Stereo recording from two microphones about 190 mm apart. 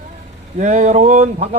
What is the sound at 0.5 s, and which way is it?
Speech, 40° right (ahead or behind).